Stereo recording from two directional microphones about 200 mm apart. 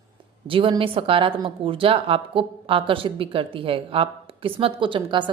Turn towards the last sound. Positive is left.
turn(degrees=-25)  # may be behind; listen again after turning